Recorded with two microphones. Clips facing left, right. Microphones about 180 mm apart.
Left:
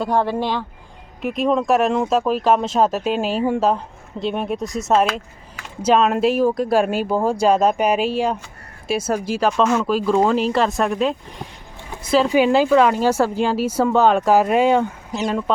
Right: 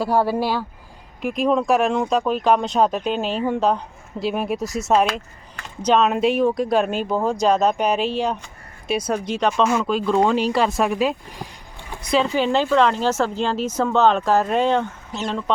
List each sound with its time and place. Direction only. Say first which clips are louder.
0.0 s speech: even; 5° right (ahead or behind)
11.9 s a sound: left 3 dB; 5° left (ahead or behind)
12.3 s speech: left 4 dB; 10° left (ahead or behind)